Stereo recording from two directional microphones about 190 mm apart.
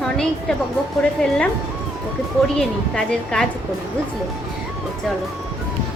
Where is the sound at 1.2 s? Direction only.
5° left (ahead or behind).